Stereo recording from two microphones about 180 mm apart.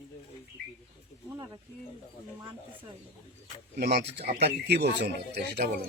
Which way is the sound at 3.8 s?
65° right (ahead or behind).